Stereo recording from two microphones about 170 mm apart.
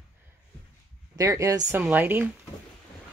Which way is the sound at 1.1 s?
20° right (ahead or behind).